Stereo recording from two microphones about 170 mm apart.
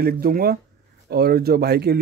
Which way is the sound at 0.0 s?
60° right (ahead or behind).